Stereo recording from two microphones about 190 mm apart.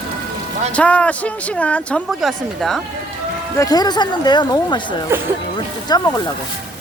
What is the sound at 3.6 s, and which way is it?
Speech, 20° left (ahead or behind).